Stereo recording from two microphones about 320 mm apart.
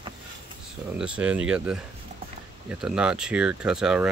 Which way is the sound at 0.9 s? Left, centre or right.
Centre.